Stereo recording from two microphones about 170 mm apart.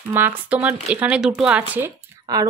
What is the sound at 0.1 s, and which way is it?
Speech, 10° right (ahead or behind).